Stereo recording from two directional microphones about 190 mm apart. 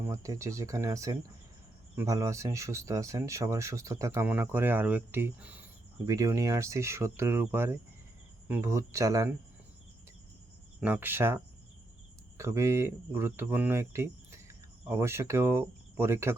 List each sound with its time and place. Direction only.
0.0 s speech: 15° right (ahead or behind)
10.8 s speech: 10° right (ahead or behind)